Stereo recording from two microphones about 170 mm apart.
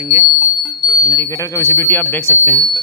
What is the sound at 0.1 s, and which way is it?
Speech, 15° right (ahead or behind).